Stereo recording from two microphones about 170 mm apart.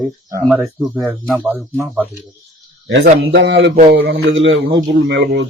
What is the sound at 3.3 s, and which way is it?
Speech, 90° right.